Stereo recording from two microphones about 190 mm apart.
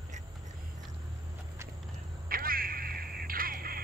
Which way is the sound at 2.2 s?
50° right (ahead or behind).